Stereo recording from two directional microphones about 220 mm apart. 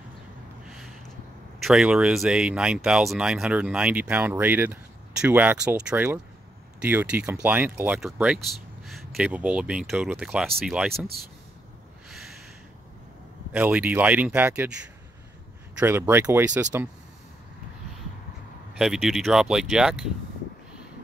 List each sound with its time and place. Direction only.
0.7 s a sound: centre (ahead or behind)
1.6 s speech: centre (ahead or behind)
10.9 s speech: 45° right (ahead or behind)
13.5 s speech: 5° right (ahead or behind)
15.8 s speech: 10° right (ahead or behind)
18.8 s speech: centre (ahead or behind)